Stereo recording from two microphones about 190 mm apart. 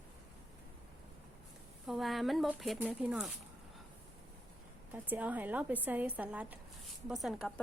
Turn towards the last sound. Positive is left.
turn(degrees=0)  # may be behind; listen again after turning